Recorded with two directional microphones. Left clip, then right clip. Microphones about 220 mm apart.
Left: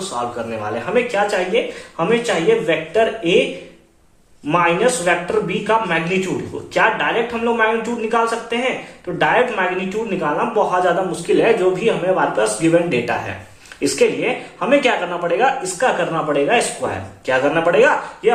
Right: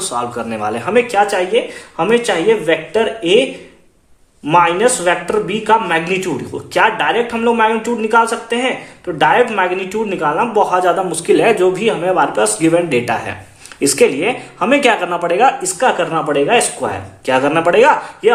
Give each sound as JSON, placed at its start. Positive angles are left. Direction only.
{"t": 0.1, "sound": "speech", "side_deg": -50}
{"t": 4.4, "sound": "speech", "side_deg": -50}